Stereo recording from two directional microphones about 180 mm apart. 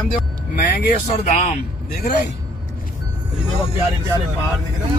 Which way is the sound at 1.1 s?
35° left (ahead or behind).